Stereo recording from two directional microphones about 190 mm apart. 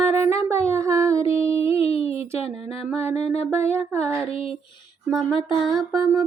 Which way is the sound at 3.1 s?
35° left (ahead or behind).